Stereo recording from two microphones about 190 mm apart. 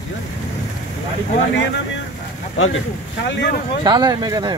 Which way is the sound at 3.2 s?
70° left (ahead or behind).